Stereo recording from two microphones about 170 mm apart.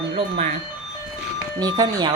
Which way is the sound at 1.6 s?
25° right (ahead or behind).